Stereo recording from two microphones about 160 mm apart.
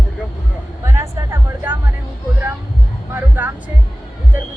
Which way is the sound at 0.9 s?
15° right (ahead or behind).